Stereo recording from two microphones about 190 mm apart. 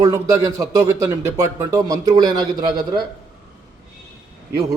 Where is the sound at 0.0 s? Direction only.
15° right (ahead or behind).